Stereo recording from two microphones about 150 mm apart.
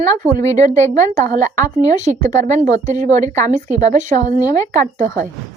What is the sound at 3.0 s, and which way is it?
Speech, 55° right (ahead or behind).